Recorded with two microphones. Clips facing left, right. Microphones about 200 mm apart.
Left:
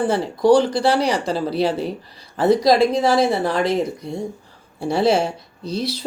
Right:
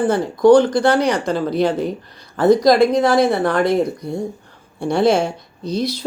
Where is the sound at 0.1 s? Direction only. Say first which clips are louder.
Right 5 dB; 30° left (ahead or behind).